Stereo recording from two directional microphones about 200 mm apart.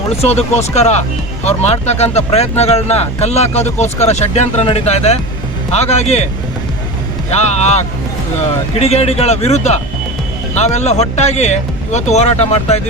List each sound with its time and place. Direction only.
0.1 s speech: 30° left (ahead or behind)
7.3 s speech: 35° left (ahead or behind)